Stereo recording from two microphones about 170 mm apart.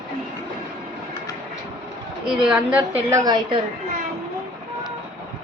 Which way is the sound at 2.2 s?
5° right (ahead or behind).